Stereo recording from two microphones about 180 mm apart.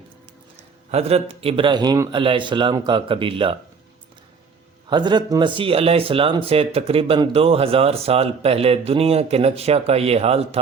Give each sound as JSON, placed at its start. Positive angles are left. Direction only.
{"t": 0.9, "sound": "a man's voice", "side_deg": -35}
{"t": 4.9, "sound": "speech", "side_deg": -25}